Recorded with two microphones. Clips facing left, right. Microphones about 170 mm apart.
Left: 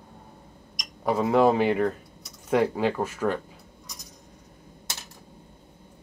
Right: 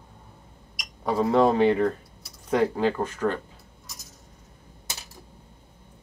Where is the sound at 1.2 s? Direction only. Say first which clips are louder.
Right 1 dB; 5° left (ahead or behind).